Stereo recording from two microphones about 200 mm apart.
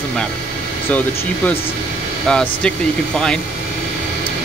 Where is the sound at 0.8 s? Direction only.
10° left (ahead or behind).